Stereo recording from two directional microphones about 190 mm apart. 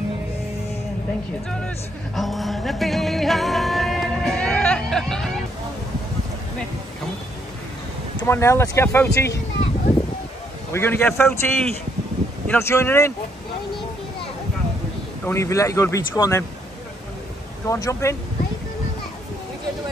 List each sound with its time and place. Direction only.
2.1 s music: centre (ahead or behind)
8.3 s speech: 15° left (ahead or behind)
10.7 s speech: 10° left (ahead or behind)
15.2 s speech: 15° left (ahead or behind)
17.6 s speech: 15° left (ahead or behind)